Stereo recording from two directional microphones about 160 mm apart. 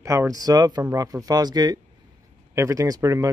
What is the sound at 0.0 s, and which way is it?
Speech, 20° right (ahead or behind).